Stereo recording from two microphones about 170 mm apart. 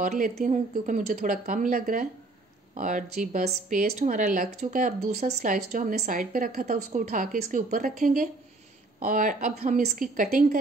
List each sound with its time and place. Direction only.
0.4 s speech: 45° right (ahead or behind)